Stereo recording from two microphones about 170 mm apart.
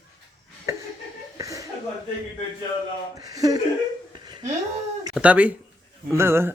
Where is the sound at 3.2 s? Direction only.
20° right (ahead or behind).